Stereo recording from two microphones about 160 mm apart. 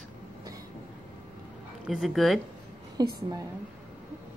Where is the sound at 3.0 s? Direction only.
25° right (ahead or behind).